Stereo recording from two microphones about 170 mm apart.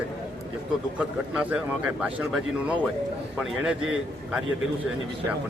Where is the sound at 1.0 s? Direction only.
10° right (ahead or behind).